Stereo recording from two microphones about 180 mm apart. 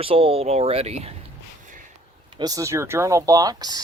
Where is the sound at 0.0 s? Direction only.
30° right (ahead or behind).